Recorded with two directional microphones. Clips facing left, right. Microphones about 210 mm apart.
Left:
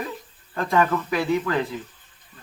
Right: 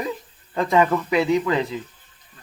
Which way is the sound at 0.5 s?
15° right (ahead or behind).